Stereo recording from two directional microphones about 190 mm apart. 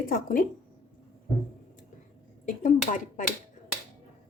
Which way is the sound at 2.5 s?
40° left (ahead or behind).